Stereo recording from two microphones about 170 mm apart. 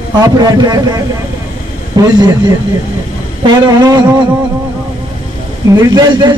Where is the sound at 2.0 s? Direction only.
25° right (ahead or behind).